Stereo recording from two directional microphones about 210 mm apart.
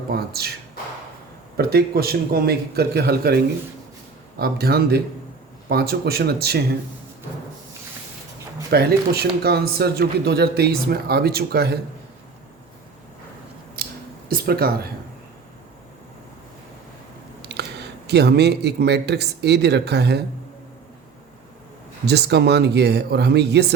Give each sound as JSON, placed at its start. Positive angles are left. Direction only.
{"t": 0.1, "sound": "speech", "side_deg": -50}
{"t": 1.5, "sound": "speech", "side_deg": -45}
{"t": 8.7, "sound": "speech", "side_deg": -45}
{"t": 14.3, "sound": "speech", "side_deg": -45}
{"t": 17.5, "sound": "speech", "side_deg": -55}
{"t": 22.0, "sound": "speech", "side_deg": -50}